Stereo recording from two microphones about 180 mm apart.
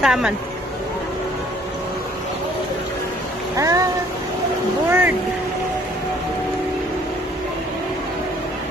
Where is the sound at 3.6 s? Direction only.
20° right (ahead or behind).